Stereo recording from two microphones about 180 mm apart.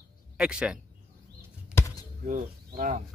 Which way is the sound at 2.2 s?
50° right (ahead or behind).